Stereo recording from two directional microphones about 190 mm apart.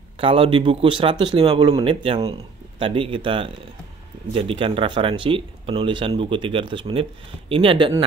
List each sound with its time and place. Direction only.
0.2 s speech: 30° right (ahead or behind)